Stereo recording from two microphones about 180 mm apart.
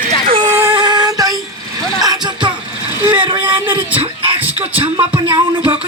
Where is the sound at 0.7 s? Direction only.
25° right (ahead or behind).